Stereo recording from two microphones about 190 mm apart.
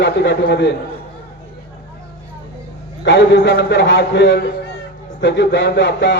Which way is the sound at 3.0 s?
65° left (ahead or behind).